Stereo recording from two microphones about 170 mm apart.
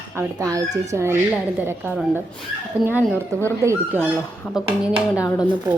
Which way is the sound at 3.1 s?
10° left (ahead or behind).